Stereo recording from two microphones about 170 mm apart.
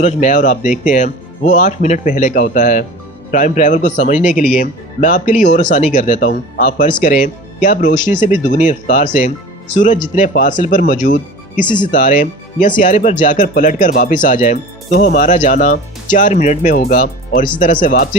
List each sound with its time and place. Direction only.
0.0 s speech: 45° left (ahead or behind)